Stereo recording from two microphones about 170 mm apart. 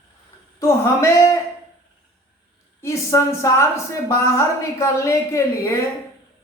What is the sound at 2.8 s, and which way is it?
A woman's voice, 15° left (ahead or behind).